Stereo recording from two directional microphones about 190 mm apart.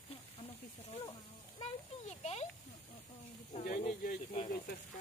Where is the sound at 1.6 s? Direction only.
35° left (ahead or behind).